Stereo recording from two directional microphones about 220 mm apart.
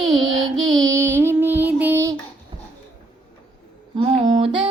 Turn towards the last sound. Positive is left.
turn(degrees=-25)  # may be behind; listen again after turning